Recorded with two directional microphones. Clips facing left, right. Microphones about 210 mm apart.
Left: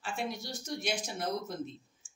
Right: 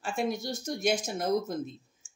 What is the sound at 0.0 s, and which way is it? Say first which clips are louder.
Speech: right 6 dB; 45° right (ahead or behind).